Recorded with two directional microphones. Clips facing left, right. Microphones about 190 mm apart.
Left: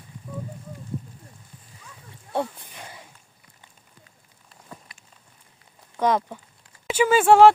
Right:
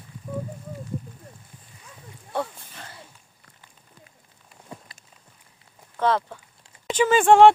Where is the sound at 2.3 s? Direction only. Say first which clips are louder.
Left 2 dB; 20° left (ahead or behind).